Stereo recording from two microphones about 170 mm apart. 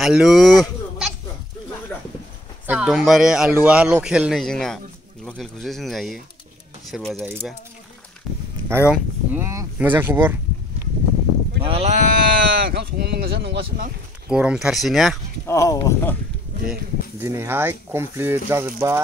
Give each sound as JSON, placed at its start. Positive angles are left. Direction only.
{"t": 0.0, "sound": "speech", "side_deg": 0}
{"t": 2.6, "sound": "speech", "side_deg": -10}
{"t": 8.6, "sound": "speech", "side_deg": -10}
{"t": 11.6, "sound": "sheep", "side_deg": -35}
{"t": 14.3, "sound": "speech", "side_deg": -5}
{"t": 15.4, "sound": "speech", "side_deg": 20}
{"t": 17.2, "sound": "speech", "side_deg": -15}